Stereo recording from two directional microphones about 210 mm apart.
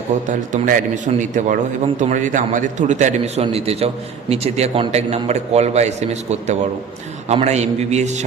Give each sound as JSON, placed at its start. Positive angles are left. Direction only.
{"t": 0.3, "sound": "a man's voice", "side_deg": -40}